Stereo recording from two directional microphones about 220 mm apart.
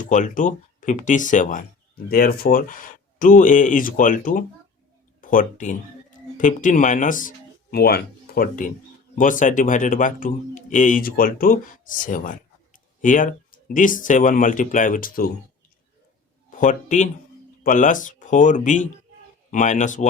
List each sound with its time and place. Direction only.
0.0 s speech: 35° left (ahead or behind)
16.5 s speech: 35° left (ahead or behind)